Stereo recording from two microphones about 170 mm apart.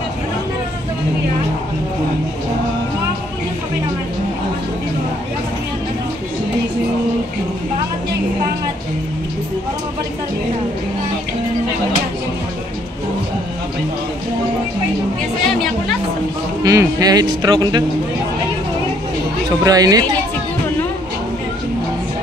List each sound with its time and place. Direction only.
16.6 s speech: 20° right (ahead or behind)
19.6 s speech: 20° right (ahead or behind)